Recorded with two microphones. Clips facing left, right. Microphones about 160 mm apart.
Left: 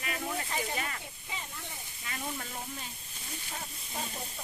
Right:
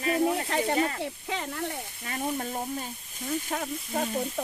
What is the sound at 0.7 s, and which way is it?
Frying, 35° right (ahead or behind).